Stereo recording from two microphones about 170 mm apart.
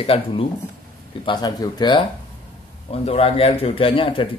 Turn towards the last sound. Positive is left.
turn(degrees=30)  # may be behind; listen again after turning